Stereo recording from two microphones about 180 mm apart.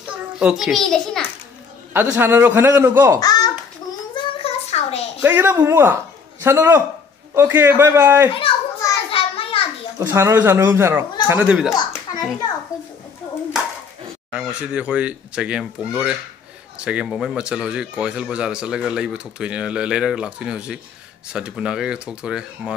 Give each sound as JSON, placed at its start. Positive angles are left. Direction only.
{"t": 0.0, "sound": "a child's voice", "side_deg": -5}
{"t": 2.0, "sound": "speech", "side_deg": -10}
{"t": 3.2, "sound": "a sound", "side_deg": 20}
{"t": 4.1, "sound": "a sound", "side_deg": 35}
{"t": 5.2, "sound": "speech", "side_deg": -10}
{"t": 9.1, "sound": "a sound", "side_deg": 30}
{"t": 9.9, "sound": "speech", "side_deg": -15}
{"t": 11.7, "sound": "a child's voice", "side_deg": 20}
{"t": 14.3, "sound": "speech", "side_deg": -5}